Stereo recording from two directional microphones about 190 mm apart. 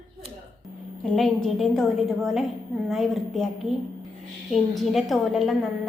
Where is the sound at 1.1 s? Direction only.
Centre (ahead or behind).